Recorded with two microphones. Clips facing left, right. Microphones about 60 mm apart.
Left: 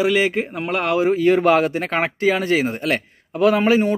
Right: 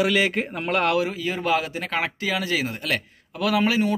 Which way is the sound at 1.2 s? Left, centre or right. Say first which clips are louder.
Left 9 dB; left.